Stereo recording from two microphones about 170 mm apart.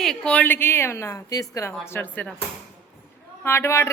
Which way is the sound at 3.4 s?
15° left (ahead or behind).